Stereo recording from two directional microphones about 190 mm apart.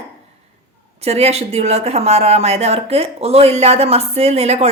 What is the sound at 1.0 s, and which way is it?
Speech, 35° right (ahead or behind).